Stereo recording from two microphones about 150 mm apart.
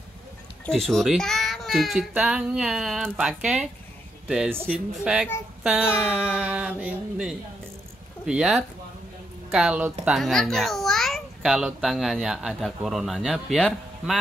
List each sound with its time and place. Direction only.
0.7 s a child's voice: 5° left (ahead or behind)
4.7 s a child's voice: 5° right (ahead or behind)
5.6 s child singing: 5° right (ahead or behind)
5.9 s a child's voice: 5° right (ahead or behind)